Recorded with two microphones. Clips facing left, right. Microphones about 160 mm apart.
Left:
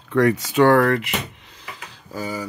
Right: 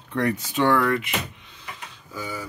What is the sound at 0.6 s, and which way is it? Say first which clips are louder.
Speech: left 4 dB; 45° left (ahead or behind).